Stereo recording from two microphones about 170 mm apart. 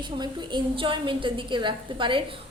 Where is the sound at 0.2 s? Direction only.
30° right (ahead or behind).